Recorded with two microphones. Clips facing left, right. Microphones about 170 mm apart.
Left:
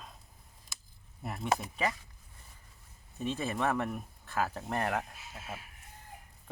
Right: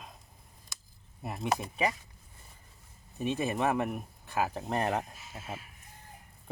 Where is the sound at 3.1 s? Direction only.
15° right (ahead or behind).